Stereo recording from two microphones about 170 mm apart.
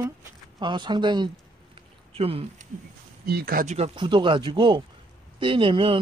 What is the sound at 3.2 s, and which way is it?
Speech, 65° right (ahead or behind).